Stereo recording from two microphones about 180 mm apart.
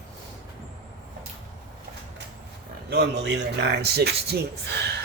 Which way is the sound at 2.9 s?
70° right (ahead or behind).